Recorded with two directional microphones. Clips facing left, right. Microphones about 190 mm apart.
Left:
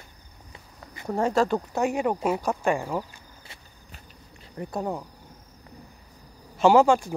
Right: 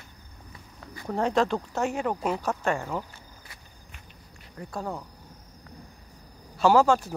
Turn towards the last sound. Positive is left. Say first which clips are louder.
# left 2 dB
turn(degrees=15)  # may be behind; listen again after turning